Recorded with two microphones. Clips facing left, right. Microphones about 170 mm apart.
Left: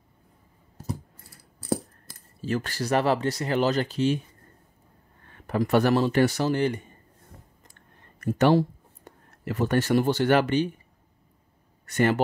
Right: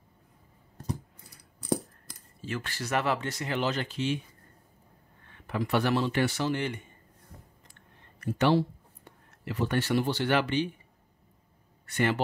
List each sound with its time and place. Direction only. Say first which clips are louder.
0.8 s coin: left 1 dB; 5° left (ahead or behind)
1.3 s a sound: left 2 dB; 5° left (ahead or behind)
2.4 s speech: left 7 dB; 40° left (ahead or behind)
5.2 s speech: left 6 dB; 40° left (ahead or behind)
8.2 s speech: left 4 dB; 45° left (ahead or behind)
11.8 s speech: left 5 dB; 45° left (ahead or behind)